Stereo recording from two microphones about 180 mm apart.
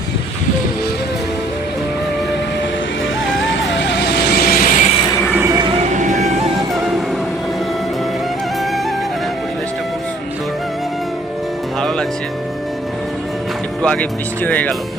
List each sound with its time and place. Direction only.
3.2 s vehicle: 90° left; by 4.9 s 50° left (ahead or behind)
5.9 s music: 45° right (ahead or behind)
13.8 s speech: 5° left (ahead or behind)